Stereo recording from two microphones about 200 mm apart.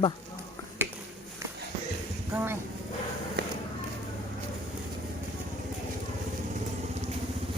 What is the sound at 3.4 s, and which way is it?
Music, 55° right (ahead or behind).